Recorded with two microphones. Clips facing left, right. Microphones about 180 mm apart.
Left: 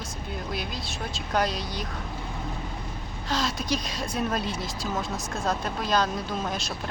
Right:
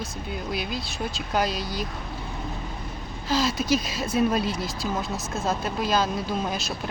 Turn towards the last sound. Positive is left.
turn(degrees=0)  # may be behind; listen again after turning